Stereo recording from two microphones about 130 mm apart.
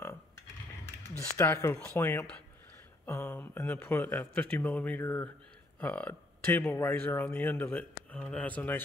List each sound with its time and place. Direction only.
1.4 s speech: 20° left (ahead or behind)